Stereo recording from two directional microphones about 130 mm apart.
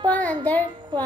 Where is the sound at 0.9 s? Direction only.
35° right (ahead or behind).